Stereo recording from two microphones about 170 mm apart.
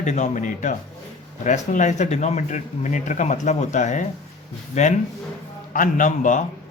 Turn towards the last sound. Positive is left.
turn(degrees=50)  # may be behind; listen again after turning